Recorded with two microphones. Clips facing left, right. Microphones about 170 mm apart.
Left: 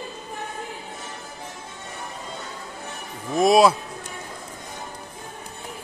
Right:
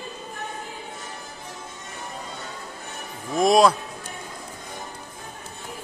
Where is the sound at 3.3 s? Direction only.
Centre (ahead or behind).